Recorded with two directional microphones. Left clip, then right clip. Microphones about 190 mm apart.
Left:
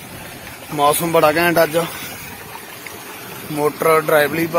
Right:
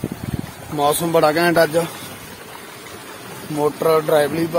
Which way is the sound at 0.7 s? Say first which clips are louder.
Left 2 dB; 10° right (ahead or behind).